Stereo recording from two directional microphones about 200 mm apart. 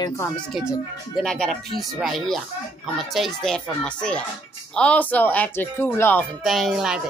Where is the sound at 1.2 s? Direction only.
5° left (ahead or behind).